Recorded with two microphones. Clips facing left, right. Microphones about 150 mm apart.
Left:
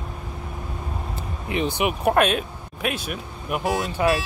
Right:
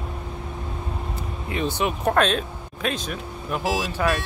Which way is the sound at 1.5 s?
15° left (ahead or behind).